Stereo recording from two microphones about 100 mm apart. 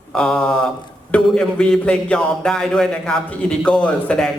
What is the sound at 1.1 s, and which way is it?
A man's voice, 10° left (ahead or behind).